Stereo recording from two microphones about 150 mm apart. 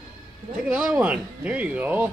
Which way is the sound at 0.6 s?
5° right (ahead or behind).